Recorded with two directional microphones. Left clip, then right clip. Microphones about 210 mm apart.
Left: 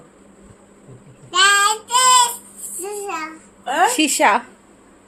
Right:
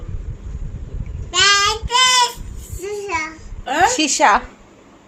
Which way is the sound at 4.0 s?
15° left (ahead or behind).